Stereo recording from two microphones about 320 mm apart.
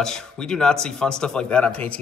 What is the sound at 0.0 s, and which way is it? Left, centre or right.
Speech, centre.